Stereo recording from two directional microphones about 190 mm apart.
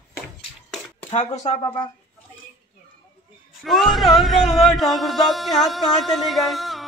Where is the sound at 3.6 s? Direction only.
Centre (ahead or behind).